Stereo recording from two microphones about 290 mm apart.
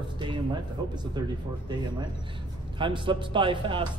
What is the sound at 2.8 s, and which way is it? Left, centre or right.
A man's voice, centre.